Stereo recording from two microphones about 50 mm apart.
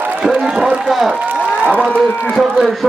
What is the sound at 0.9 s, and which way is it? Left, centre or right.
Speech, centre.